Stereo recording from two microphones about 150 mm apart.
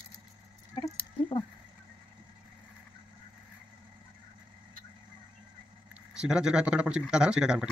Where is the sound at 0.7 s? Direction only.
25° left (ahead or behind).